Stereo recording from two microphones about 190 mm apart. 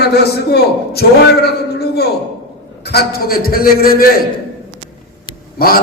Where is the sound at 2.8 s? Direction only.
55° left (ahead or behind).